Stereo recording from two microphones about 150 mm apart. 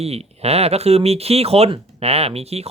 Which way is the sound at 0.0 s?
45° right (ahead or behind).